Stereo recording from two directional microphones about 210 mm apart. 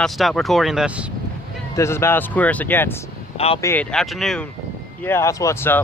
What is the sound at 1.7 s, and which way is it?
Speech, 15° left (ahead or behind).